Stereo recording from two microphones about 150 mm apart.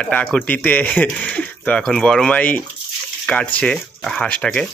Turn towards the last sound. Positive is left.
turn(degrees=10)  # may be behind; listen again after turning